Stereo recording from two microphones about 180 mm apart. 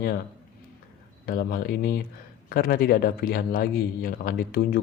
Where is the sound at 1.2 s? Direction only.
55° left (ahead or behind).